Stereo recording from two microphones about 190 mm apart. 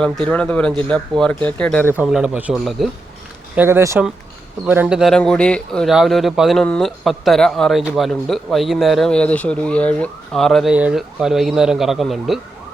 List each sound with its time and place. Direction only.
0.0 s speech: 5° left (ahead or behind)
1.9 s speech: 5° right (ahead or behind)
3.5 s speech: 10° right (ahead or behind)